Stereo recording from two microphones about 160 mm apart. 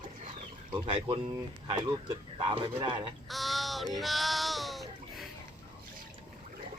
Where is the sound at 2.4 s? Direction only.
30° right (ahead or behind).